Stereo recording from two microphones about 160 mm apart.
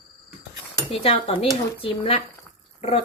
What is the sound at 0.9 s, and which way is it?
A woman's voice, 35° left (ahead or behind).